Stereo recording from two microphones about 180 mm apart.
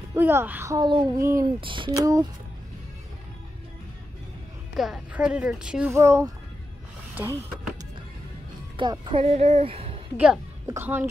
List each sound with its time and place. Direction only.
0.1 s speech: 15° right (ahead or behind)
1.6 s speech: 25° right (ahead or behind)
4.7 s speech: centre (ahead or behind)
8.7 s speech: 25° right (ahead or behind)
10.1 s a woman's voice: 5° right (ahead or behind)